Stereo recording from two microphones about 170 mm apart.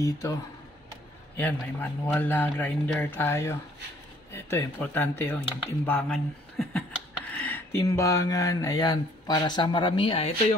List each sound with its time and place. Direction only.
0.0 s a man's voice: 20° left (ahead or behind)
7.2 s a sound: 10° left (ahead or behind)
7.8 s speech: 20° left (ahead or behind)